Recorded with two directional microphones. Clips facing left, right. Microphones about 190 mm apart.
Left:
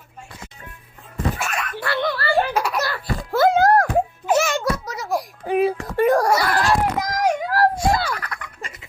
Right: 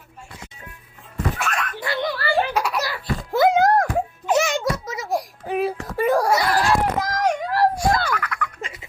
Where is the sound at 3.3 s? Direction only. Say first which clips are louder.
Left 1 dB; 20° right (ahead or behind).